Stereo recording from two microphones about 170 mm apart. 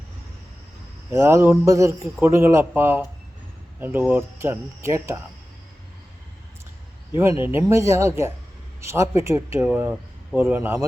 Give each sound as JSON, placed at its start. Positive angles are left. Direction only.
{"t": 1.1, "sound": "speech", "side_deg": -15}
{"t": 7.1, "sound": "speech", "side_deg": -15}